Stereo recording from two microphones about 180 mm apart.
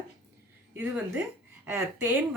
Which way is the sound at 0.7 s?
10° right (ahead or behind).